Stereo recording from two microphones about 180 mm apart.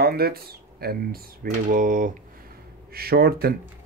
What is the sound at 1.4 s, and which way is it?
Speech, 45° right (ahead or behind).